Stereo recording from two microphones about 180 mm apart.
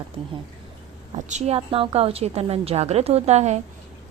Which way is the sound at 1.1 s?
40° right (ahead or behind).